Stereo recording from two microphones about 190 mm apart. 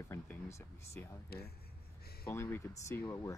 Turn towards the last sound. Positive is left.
turn(degrees=15)  # may be behind; listen again after turning